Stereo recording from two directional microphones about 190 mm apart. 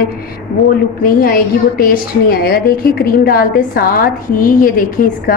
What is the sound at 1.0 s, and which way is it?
A woman's voice, 50° left (ahead or behind).